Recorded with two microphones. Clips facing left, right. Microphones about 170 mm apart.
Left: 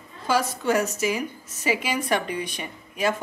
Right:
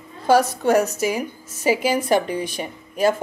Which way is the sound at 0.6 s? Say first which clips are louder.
Right 5 dB; 40° right (ahead or behind).